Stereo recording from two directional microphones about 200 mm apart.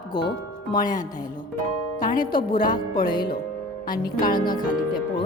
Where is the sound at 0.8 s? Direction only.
40° left (ahead or behind).